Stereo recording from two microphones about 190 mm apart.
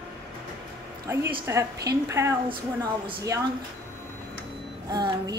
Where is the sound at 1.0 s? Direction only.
15° right (ahead or behind).